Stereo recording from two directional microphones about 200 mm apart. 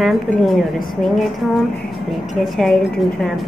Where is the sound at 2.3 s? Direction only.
Centre (ahead or behind).